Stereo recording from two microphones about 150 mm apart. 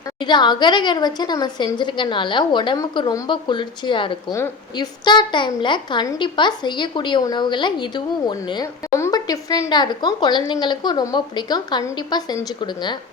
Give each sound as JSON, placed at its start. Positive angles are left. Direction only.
{"t": 0.2, "sound": "a woman's voice", "side_deg": 30}